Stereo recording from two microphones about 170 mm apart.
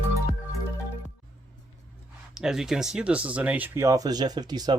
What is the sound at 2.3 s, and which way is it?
Speech, 5° right (ahead or behind).